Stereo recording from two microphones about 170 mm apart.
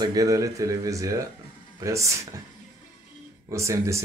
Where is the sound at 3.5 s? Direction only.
15° right (ahead or behind).